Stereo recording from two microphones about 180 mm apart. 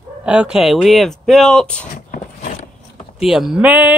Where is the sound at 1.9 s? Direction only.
45° left (ahead or behind).